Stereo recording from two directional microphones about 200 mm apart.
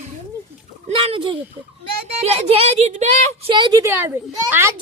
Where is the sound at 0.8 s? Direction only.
30° right (ahead or behind).